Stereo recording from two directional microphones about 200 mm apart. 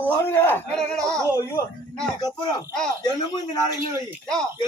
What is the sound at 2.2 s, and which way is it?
A man's voice, 25° left (ahead or behind).